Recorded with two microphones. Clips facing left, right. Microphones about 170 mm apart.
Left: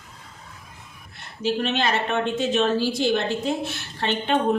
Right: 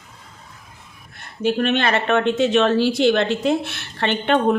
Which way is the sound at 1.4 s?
55° right (ahead or behind).